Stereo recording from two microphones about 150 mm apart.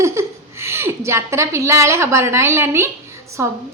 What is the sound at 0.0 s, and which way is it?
A woman's voice, 20° right (ahead or behind).